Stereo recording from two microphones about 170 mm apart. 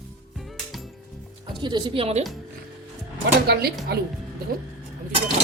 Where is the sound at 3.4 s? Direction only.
70° right (ahead or behind).